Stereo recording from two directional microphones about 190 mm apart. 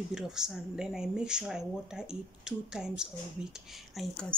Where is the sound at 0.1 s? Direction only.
5° right (ahead or behind).